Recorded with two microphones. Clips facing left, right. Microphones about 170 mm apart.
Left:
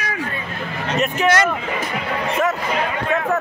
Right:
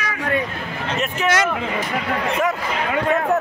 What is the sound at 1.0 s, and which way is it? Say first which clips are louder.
Speech: left 3 dB; 5° right (ahead or behind).